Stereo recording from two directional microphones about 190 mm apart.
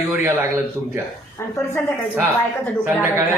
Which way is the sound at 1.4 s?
15° left (ahead or behind).